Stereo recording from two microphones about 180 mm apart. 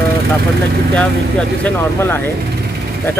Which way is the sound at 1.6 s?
10° left (ahead or behind).